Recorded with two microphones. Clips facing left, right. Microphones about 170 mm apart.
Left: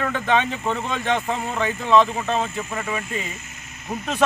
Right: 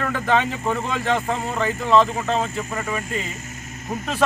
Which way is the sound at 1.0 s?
15° left (ahead or behind).